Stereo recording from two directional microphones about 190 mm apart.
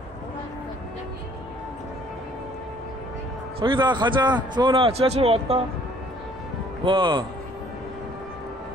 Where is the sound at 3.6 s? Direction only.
25° right (ahead or behind).